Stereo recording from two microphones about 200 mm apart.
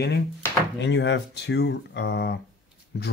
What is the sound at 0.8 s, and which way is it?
Speech, 60° left (ahead or behind).